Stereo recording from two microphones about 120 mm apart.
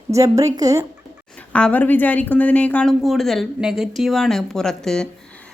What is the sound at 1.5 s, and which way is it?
A woman's voice, 10° left (ahead or behind).